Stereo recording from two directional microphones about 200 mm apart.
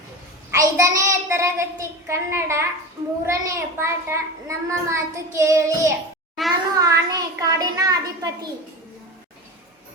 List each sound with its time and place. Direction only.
0.5 s child singing: 15° right (ahead or behind)
2.0 s a child's voice: 15° right (ahead or behind)
6.4 s a child's voice: centre (ahead or behind)
6.7 s a child's voice: 15° right (ahead or behind)